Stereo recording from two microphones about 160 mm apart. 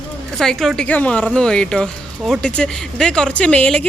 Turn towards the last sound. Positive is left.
turn(degrees=5)  # may be behind; listen again after turning